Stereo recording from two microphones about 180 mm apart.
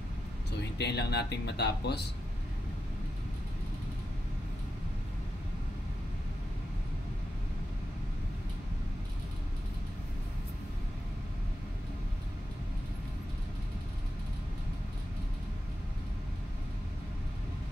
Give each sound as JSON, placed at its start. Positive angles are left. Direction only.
{"t": 0.5, "sound": "speech", "side_deg": 70}